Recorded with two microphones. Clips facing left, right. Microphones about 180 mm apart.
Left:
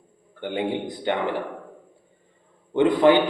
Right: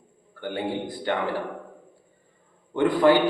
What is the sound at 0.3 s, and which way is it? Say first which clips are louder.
A man's voice: left 3 dB; 20° left (ahead or behind).